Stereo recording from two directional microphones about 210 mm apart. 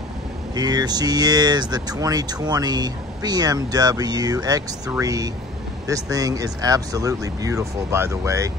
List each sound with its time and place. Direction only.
0.6 s speech: 20° right (ahead or behind)